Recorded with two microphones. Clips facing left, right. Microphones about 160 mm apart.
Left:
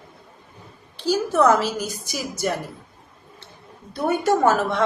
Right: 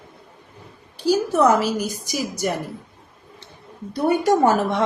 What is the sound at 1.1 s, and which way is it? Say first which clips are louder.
A woman's voice: even; 10° right (ahead or behind).